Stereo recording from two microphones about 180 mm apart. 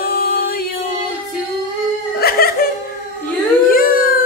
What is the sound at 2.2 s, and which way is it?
Laughter, 55° left (ahead or behind).